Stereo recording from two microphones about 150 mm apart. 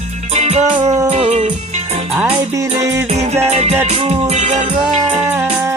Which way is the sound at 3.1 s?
50° right (ahead or behind).